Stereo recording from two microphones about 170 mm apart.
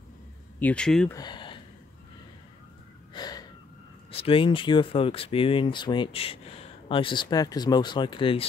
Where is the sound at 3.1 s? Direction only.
25° left (ahead or behind).